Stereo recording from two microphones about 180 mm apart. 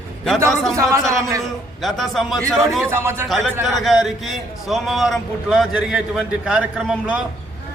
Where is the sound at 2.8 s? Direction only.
15° right (ahead or behind).